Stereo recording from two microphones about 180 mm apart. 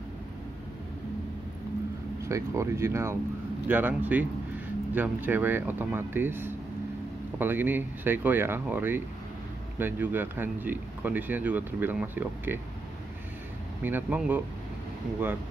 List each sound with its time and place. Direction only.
2.2 s speech: 15° right (ahead or behind)
13.8 s speech: 10° right (ahead or behind)